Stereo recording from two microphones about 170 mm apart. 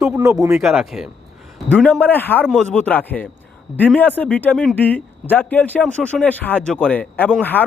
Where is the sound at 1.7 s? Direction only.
10° left (ahead or behind).